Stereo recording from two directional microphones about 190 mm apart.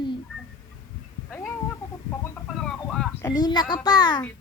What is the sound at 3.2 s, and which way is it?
Speech, 20° left (ahead or behind).